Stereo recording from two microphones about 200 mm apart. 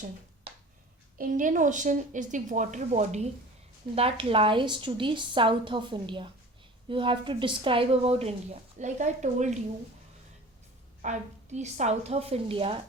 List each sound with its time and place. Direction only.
1.2 s a woman's voice: 40° right (ahead or behind)
11.0 s a woman's voice: 35° right (ahead or behind)